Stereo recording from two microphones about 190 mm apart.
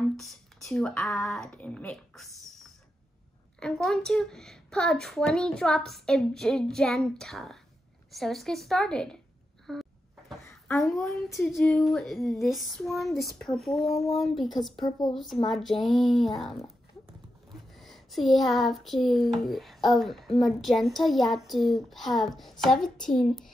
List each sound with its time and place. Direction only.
0.0 s a child's voice: centre (ahead or behind)
9.7 s a sound: centre (ahead or behind)
11.1 s a child's voice: centre (ahead or behind)
14.8 s speech: 20° left (ahead or behind)
15.4 s a child's voice: centre (ahead or behind)
17.7 s a child's voice: centre (ahead or behind)